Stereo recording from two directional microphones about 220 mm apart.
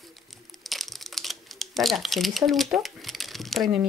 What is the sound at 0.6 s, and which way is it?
Crumpling, centre (ahead or behind).